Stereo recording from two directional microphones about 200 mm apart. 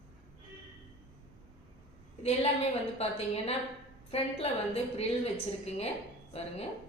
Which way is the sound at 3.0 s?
30° left (ahead or behind).